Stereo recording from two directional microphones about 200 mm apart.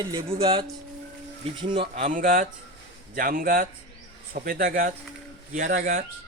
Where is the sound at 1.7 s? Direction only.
35° right (ahead or behind).